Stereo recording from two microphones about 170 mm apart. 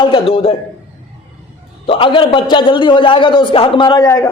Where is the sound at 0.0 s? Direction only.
30° left (ahead or behind).